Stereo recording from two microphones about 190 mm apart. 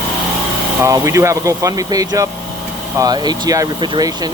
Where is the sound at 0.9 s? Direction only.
15° right (ahead or behind).